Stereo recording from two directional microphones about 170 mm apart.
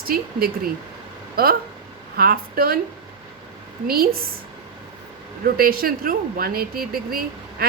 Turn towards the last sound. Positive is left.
turn(degrees=-60)  # may be behind; listen again after turning